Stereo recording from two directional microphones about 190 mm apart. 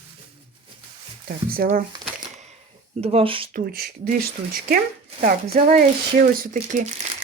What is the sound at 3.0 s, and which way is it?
Speech, 30° right (ahead or behind).